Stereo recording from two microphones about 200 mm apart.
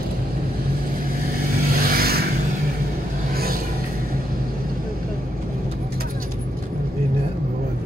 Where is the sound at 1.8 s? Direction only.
50° right (ahead or behind).